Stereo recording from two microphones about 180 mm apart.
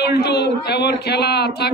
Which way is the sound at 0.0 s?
65° left (ahead or behind).